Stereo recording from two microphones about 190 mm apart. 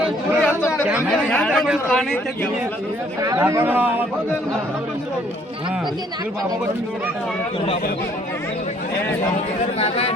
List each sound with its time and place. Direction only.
0.0 s chatter: 10° right (ahead or behind)
1.1 s a man's voice: 5° left (ahead or behind)
3.2 s a man's voice: 15° right (ahead or behind)
9.7 s speech: 30° left (ahead or behind)